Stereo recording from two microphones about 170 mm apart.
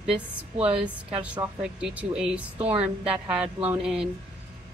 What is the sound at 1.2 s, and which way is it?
A woman's voice, 5° right (ahead or behind).